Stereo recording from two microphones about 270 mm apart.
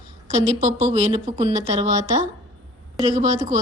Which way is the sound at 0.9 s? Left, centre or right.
Centre.